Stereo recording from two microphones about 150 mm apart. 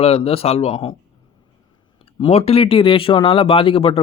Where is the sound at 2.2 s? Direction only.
40° left (ahead or behind).